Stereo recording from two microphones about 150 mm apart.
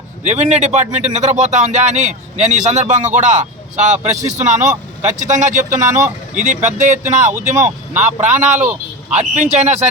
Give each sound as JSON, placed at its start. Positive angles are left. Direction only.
{"t": 0.3, "sound": "a man's voice", "side_deg": -50}
{"t": 5.8, "sound": "speech", "side_deg": -20}
{"t": 6.3, "sound": "a man's voice", "side_deg": -55}